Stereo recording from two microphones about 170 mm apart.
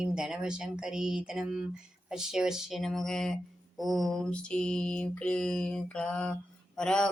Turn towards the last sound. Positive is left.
turn(degrees=5)  # may be behind; listen again after turning